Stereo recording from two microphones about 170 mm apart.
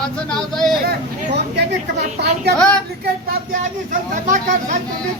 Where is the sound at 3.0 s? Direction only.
55° right (ahead or behind).